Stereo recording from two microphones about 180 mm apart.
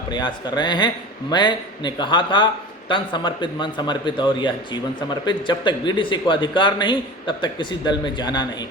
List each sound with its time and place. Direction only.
0.1 s a man's voice: 25° left (ahead or behind)